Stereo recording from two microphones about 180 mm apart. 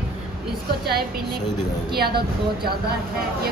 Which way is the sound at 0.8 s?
60° right (ahead or behind).